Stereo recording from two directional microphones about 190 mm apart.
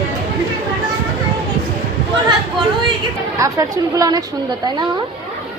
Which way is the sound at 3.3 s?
15° right (ahead or behind).